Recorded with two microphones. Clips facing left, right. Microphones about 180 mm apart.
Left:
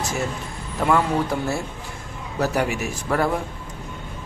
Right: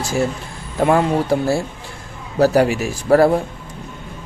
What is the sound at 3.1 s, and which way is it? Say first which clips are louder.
Speech: right 10 dB; 35° right (ahead or behind).